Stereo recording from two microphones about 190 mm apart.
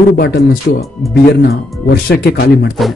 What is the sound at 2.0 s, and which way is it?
Speech, 60° left (ahead or behind).